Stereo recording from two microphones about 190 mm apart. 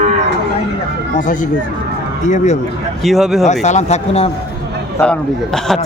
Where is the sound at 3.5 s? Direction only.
40° left (ahead or behind).